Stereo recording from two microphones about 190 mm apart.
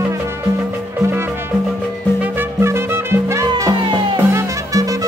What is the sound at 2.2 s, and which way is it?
Salsa music, 10° right (ahead or behind).